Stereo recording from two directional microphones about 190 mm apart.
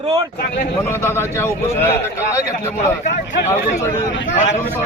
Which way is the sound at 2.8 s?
40° left (ahead or behind).